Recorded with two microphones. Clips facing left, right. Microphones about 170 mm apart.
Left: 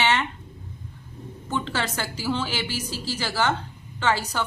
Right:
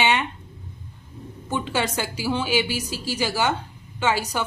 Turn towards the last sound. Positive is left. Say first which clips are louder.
# right 1 dB
turn(degrees=-10)  # may be behind; listen again after turning